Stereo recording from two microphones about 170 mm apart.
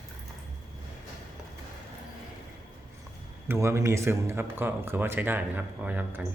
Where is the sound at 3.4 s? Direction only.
15° right (ahead or behind).